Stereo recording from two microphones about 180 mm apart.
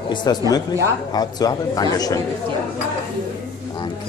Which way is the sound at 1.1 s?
20° left (ahead or behind).